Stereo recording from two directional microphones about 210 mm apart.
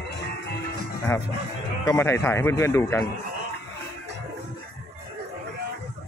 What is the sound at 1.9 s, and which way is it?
Speech, 15° left (ahead or behind).